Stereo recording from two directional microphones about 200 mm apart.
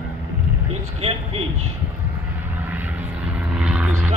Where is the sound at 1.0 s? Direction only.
30° right (ahead or behind).